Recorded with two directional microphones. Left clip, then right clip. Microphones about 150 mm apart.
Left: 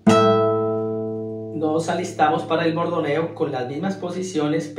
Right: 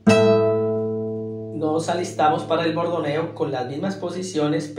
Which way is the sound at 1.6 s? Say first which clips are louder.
Even; 30° right (ahead or behind).